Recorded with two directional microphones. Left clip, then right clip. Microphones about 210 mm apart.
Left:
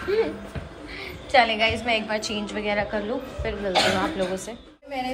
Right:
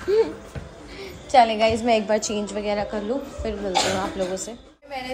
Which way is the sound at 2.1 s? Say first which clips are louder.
Right 4 dB; 65° right (ahead or behind).